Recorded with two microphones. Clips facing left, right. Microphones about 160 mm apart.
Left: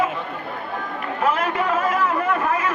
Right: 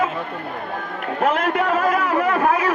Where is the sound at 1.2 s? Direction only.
60° right (ahead or behind).